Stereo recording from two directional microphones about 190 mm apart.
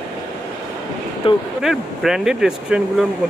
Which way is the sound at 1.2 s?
25° left (ahead or behind).